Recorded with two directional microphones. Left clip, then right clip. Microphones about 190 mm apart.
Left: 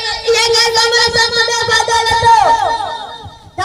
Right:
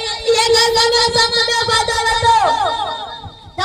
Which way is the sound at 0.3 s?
25° left (ahead or behind).